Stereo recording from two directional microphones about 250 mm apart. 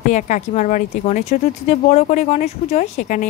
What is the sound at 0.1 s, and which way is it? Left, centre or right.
Speech, left.